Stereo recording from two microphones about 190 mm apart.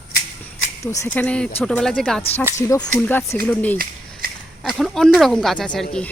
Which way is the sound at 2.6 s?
20° left (ahead or behind).